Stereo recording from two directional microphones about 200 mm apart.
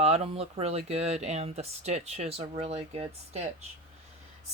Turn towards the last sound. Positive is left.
turn(degrees=-30)  # may be behind; listen again after turning